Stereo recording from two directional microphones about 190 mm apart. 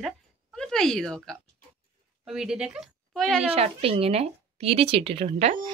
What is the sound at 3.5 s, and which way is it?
Speech, 30° right (ahead or behind).